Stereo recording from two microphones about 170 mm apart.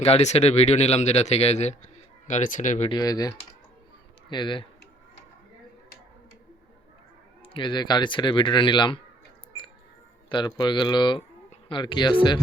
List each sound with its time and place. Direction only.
0.0 s speech: 40° left (ahead or behind)
2.9 s speech: 25° left (ahead or behind)
7.4 s speech: 30° left (ahead or behind)
10.2 s speech: 25° left (ahead or behind)